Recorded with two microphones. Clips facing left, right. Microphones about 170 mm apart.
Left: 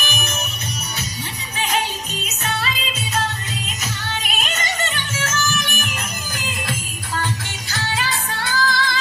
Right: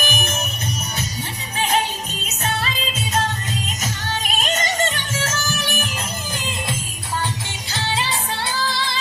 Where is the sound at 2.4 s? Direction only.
45° right (ahead or behind).